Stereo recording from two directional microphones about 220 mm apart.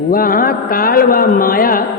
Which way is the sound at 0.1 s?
40° left (ahead or behind).